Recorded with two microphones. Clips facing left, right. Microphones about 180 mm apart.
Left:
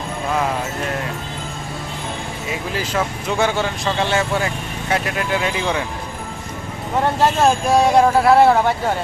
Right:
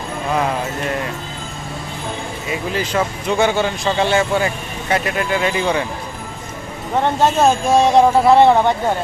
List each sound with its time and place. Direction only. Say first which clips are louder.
2.7 s speech: right 3 dB; centre (ahead or behind)
7.0 s speech: right 1 dB; 20° right (ahead or behind)
7.8 s speech: right 2 dB; centre (ahead or behind)